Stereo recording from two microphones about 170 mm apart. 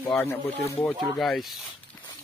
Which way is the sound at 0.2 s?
15° left (ahead or behind).